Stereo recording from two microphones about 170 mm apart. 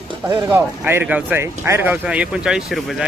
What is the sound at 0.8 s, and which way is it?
Speech, 10° right (ahead or behind).